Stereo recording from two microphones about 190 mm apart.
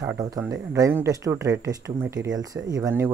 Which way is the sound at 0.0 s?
20° right (ahead or behind).